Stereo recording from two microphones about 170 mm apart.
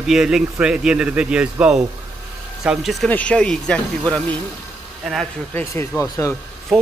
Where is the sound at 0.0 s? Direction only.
Centre (ahead or behind).